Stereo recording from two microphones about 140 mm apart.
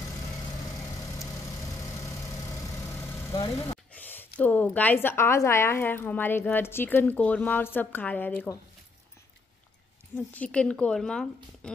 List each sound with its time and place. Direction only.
0.9 s vehicle: 25° left (ahead or behind)
3.3 s speech: 30° left (ahead or behind)
3.9 s a woman's voice: 15° left (ahead or behind)
10.3 s a woman's voice: 10° left (ahead or behind)